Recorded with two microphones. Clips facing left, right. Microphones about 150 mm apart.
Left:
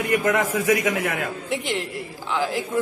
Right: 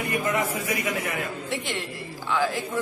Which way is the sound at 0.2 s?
80° left.